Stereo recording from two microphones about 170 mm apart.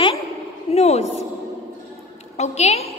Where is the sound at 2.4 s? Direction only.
40° left (ahead or behind).